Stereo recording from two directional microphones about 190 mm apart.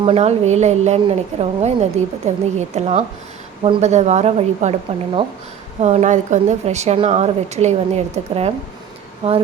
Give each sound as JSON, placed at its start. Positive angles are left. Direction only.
{"t": 0.0, "sound": "a woman's voice", "side_deg": -30}